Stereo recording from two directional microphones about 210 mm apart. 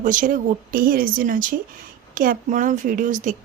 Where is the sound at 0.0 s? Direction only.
40° right (ahead or behind).